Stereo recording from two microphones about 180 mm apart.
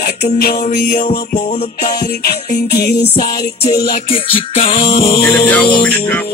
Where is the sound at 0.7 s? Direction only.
45° left (ahead or behind).